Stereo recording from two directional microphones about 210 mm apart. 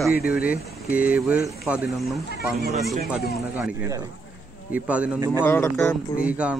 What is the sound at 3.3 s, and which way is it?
A man's voice, 5° right (ahead or behind).